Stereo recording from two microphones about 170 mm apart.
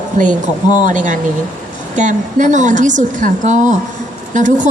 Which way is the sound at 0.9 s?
50° right (ahead or behind).